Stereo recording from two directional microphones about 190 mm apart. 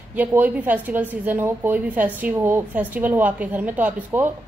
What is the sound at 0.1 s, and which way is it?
A woman's voice, 10° right (ahead or behind).